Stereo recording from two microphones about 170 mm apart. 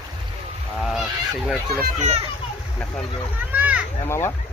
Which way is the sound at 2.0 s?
40° right (ahead or behind).